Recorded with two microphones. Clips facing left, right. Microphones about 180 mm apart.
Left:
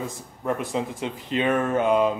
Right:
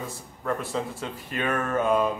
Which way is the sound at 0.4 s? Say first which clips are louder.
Left 3 dB; 15° left (ahead or behind).